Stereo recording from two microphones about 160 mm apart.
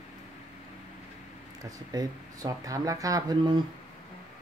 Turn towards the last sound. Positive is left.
turn(degrees=-25)  # may be behind; listen again after turning